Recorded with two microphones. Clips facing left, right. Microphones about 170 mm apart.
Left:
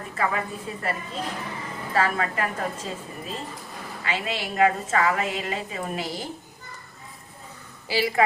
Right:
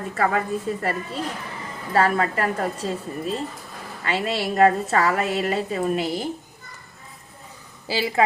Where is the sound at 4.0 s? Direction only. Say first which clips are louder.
Right 5 dB; 35° right (ahead or behind).